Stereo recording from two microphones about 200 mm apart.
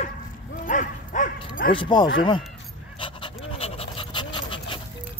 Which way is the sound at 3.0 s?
25° left (ahead or behind).